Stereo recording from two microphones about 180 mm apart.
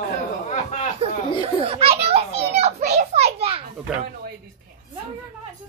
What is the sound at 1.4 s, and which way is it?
Children playing, 30° right (ahead or behind).